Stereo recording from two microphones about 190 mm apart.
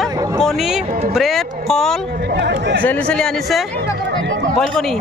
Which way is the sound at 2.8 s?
5° left (ahead or behind).